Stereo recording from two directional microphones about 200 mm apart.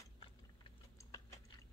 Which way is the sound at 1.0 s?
15° left (ahead or behind).